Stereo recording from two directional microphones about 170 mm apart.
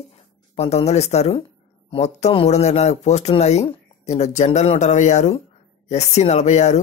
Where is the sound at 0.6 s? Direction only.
40° left (ahead or behind).